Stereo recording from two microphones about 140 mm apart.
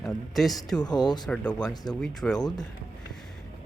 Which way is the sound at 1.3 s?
5° left (ahead or behind).